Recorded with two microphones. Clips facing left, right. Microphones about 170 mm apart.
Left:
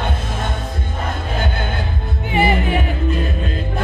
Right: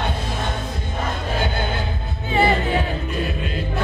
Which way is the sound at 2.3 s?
15° left (ahead or behind).